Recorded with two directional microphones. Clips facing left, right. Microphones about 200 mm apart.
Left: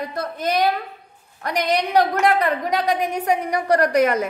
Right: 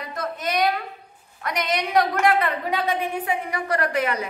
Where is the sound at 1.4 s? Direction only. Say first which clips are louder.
Left 4 dB; 35° left (ahead or behind).